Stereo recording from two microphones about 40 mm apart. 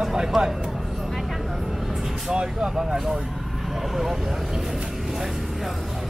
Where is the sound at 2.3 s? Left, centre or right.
Centre.